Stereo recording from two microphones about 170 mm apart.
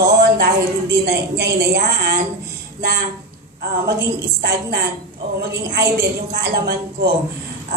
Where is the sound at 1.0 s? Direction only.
75° right (ahead or behind).